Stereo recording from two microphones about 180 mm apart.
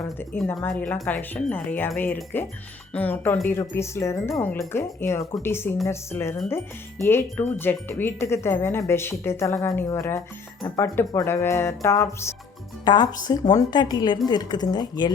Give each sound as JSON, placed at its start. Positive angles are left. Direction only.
{"t": 0.2, "sound": "speech", "side_deg": 10}